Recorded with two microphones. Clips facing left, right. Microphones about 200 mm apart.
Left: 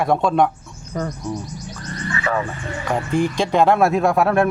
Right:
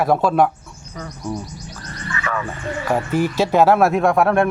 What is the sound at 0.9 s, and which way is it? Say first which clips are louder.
Speech: left 8 dB; 50° left (ahead or behind).